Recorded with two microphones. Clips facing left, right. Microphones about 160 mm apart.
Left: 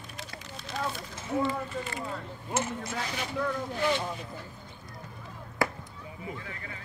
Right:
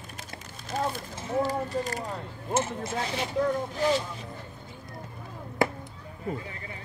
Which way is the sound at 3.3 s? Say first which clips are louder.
Right 4 dB; 35° right (ahead or behind).